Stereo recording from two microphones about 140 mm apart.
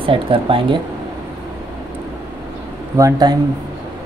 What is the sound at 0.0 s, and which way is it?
Speech, 40° right (ahead or behind).